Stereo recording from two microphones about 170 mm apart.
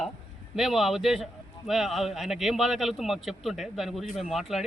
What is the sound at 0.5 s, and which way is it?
A man's voice, centre (ahead or behind).